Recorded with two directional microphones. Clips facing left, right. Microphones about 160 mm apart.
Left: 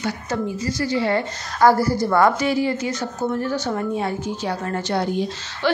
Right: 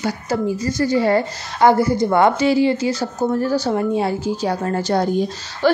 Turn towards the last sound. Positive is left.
turn(degrees=-40)  # may be behind; listen again after turning